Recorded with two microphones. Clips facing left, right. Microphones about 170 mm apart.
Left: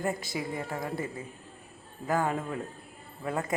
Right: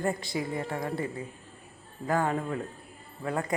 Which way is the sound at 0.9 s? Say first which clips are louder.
Right 2 dB; 20° left (ahead or behind).